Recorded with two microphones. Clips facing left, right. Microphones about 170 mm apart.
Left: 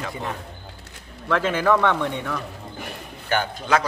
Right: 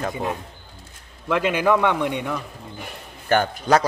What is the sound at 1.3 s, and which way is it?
A man's voice, 15° right (ahead or behind).